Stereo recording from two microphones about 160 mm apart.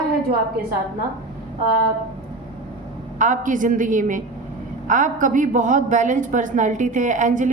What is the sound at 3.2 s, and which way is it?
A woman's voice, 50° right (ahead or behind).